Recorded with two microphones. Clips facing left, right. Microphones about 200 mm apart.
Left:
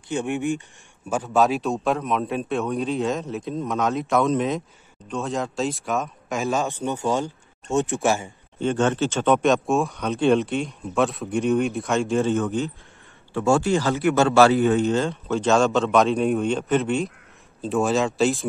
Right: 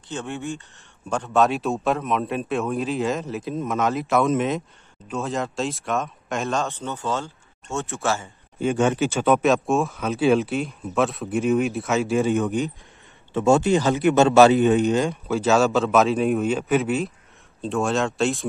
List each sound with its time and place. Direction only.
0.1 s speech: 15° left (ahead or behind)
6.6 s speech: 15° left (ahead or behind)
8.5 s a man's voice: 10° right (ahead or behind)
15.2 s speech: 5° right (ahead or behind)